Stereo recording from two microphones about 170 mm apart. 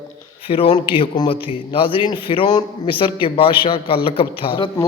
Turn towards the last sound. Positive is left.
turn(degrees=30)  # may be behind; listen again after turning